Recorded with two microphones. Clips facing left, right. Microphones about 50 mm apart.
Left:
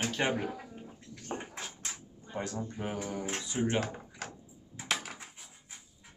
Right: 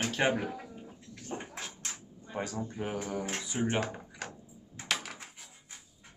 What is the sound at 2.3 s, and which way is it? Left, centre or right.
Speech, centre.